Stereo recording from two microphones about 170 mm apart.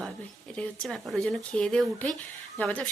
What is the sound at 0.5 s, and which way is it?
Speech, 5° left (ahead or behind).